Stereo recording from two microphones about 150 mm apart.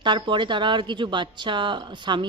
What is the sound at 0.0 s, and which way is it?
A woman's voice, 30° right (ahead or behind).